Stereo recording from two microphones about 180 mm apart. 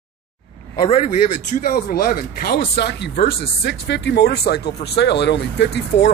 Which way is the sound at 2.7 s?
70° left (ahead or behind).